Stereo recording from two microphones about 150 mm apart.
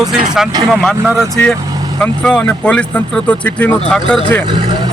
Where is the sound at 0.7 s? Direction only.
Centre (ahead or behind).